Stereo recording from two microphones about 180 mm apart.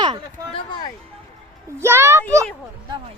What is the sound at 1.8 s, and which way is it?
Speech, 15° right (ahead or behind).